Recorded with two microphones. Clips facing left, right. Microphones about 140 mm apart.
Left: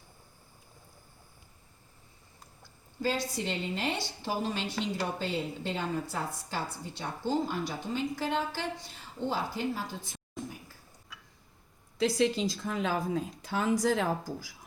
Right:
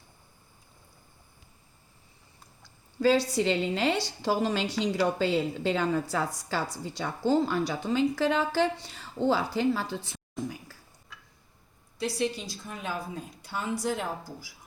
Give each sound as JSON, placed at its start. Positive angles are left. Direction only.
{"t": 3.0, "sound": "a woman's voice", "side_deg": -85}
{"t": 11.9, "sound": "a woman's voice", "side_deg": 90}